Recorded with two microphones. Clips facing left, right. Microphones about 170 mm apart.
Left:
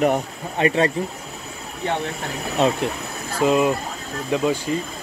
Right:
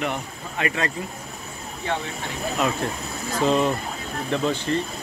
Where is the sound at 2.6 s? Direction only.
30° left (ahead or behind).